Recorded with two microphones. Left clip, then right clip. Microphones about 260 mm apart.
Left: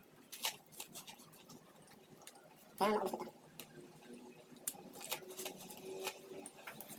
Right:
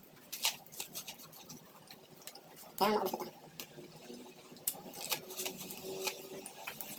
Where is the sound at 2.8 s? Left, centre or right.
Left.